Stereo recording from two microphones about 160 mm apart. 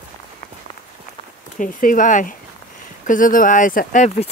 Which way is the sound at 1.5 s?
55° left (ahead or behind).